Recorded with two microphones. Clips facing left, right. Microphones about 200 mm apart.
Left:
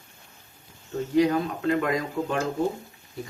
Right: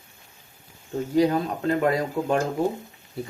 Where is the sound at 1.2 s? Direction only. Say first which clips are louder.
Right 1 dB; 35° right (ahead or behind).